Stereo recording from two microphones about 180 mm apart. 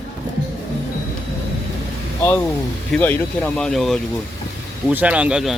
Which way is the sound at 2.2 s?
15° left (ahead or behind).